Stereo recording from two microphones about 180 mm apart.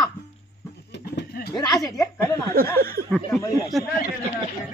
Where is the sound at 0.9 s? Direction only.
70° left (ahead or behind).